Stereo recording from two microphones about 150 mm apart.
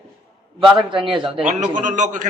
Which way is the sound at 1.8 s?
55° right (ahead or behind).